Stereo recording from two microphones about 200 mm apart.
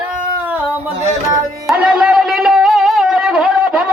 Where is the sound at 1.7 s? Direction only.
5° right (ahead or behind).